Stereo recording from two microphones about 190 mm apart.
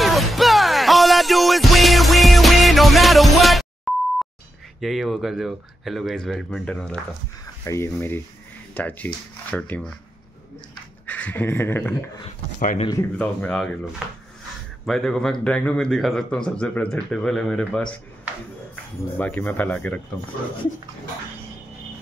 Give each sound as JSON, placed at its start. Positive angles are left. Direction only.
{"t": 0.0, "sound": "music", "side_deg": 0}
{"t": 4.7, "sound": "speech", "side_deg": 0}
{"t": 11.1, "sound": "speech", "side_deg": 10}
{"t": 12.5, "sound": "speech", "side_deg": 45}
{"t": 13.2, "sound": "speech", "side_deg": 5}
{"t": 19.1, "sound": "speech", "side_deg": 10}